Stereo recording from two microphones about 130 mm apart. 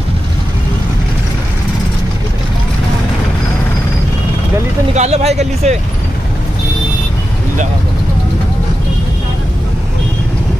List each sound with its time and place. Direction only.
4.9 s speech: 55° right (ahead or behind)